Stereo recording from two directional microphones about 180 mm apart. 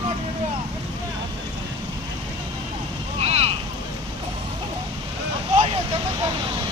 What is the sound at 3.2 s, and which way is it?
Boat, 35° right (ahead or behind).